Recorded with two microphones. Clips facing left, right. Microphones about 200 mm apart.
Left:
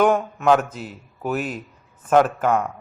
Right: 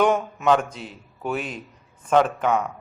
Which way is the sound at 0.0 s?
5° left (ahead or behind).